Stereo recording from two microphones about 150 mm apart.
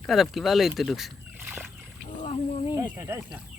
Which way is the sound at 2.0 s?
50° left (ahead or behind).